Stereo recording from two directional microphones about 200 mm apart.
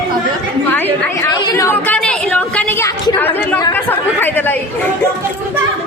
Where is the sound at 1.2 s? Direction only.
15° left (ahead or behind).